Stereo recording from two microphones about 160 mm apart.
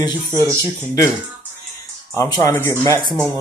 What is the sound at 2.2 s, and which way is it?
Speech, 20° left (ahead or behind).